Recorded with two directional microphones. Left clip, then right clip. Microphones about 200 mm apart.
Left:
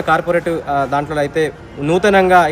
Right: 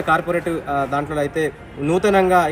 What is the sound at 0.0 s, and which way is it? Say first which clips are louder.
A man's voice: left 4 dB; 5° left (ahead or behind).